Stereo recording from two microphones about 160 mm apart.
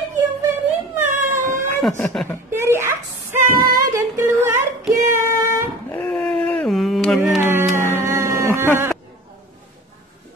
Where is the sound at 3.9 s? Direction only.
20° right (ahead or behind).